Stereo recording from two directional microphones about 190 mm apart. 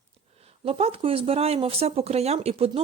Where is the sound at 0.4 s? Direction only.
30° right (ahead or behind).